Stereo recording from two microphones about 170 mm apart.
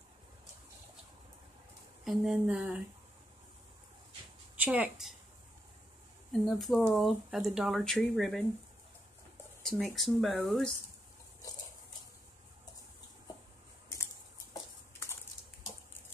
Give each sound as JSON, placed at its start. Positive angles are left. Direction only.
{"t": 2.0, "sound": "speech", "side_deg": -5}
{"t": 4.6, "sound": "a woman's voice", "side_deg": -10}
{"t": 6.4, "sound": "speech", "side_deg": 0}
{"t": 9.6, "sound": "speech", "side_deg": 0}
{"t": 14.5, "sound": "a sound", "side_deg": 15}